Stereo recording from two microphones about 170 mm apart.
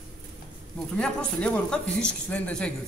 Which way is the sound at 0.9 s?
5° left (ahead or behind).